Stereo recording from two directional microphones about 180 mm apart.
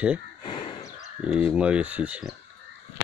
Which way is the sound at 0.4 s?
30° left (ahead or behind).